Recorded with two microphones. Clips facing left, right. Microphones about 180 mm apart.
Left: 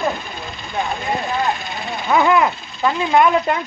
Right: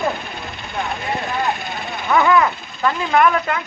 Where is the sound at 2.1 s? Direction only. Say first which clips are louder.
Even; 20° left (ahead or behind).